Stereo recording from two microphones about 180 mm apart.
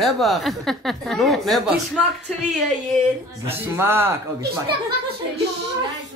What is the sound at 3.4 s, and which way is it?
Speech, 15° right (ahead or behind).